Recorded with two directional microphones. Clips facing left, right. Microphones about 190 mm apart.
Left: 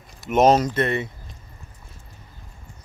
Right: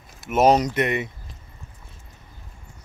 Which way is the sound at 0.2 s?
5° right (ahead or behind).